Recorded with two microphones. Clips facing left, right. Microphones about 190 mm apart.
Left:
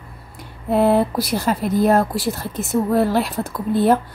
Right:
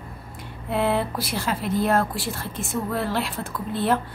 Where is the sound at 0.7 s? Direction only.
45° left (ahead or behind).